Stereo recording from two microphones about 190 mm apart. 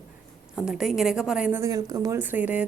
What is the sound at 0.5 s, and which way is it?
A woman's voice, 5° right (ahead or behind).